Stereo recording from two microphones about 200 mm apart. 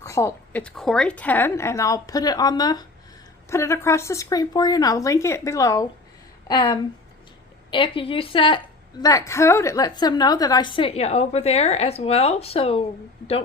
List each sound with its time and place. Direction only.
0.0 s a woman's voice: 15° left (ahead or behind); by 12.8 s 30° left (ahead or behind)